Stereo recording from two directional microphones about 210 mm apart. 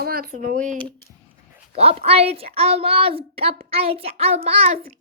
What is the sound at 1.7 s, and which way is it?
A woman's voice, 30° right (ahead or behind).